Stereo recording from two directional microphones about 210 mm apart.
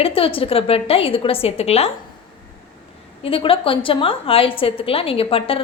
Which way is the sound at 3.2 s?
25° left (ahead or behind).